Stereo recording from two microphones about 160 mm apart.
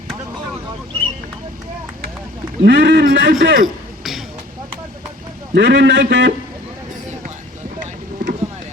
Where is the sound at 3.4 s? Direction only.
60° right (ahead or behind).